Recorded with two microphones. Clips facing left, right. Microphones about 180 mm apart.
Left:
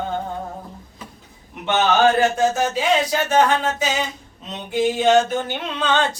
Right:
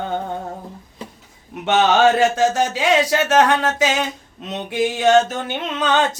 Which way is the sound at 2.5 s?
90° right.